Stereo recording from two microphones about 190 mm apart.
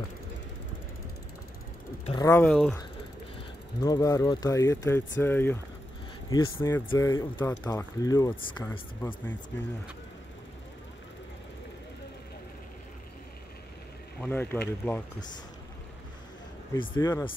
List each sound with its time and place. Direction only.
2.0 s speech: 20° left (ahead or behind)
3.8 s speech: 20° left (ahead or behind)
9.0 s speech: 10° left (ahead or behind)
14.2 s speech: 10° left (ahead or behind)
16.7 s speech: 25° left (ahead or behind)